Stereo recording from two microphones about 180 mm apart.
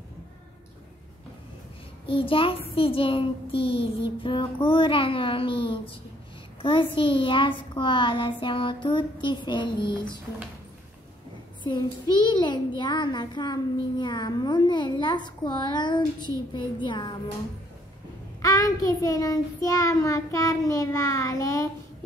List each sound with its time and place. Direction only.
2.0 s a child's voice: 30° left (ahead or behind)
12.3 s a child's voice: 25° left (ahead or behind)
18.4 s a child's voice: 20° left (ahead or behind)